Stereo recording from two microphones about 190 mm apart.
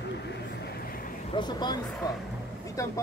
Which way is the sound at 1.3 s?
20° left (ahead or behind).